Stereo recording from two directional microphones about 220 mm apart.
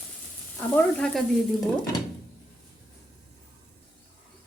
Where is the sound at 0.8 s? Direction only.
5° left (ahead or behind).